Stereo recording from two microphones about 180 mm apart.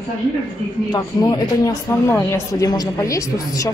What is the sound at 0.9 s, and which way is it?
Speech, 20° left (ahead or behind).